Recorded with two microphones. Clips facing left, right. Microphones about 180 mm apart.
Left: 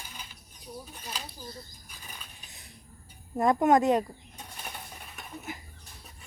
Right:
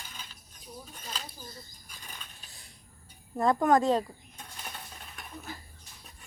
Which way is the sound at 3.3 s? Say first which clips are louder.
Left 2 dB; 20° left (ahead or behind).